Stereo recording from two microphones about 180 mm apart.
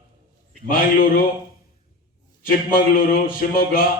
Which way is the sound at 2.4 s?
55° left (ahead or behind).